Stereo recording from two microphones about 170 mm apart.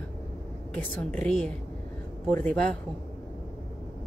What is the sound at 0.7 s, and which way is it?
Speech, 10° left (ahead or behind).